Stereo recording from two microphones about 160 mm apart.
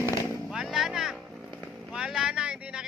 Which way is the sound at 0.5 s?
Centre (ahead or behind).